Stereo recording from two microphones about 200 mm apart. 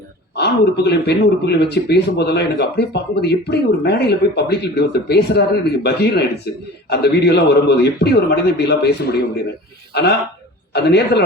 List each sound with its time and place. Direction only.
0.3 s speech: 55° left (ahead or behind)